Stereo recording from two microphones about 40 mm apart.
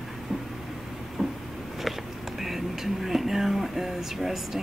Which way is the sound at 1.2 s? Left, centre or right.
Right.